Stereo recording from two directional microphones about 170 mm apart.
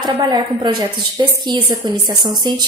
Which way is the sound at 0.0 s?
25° right (ahead or behind).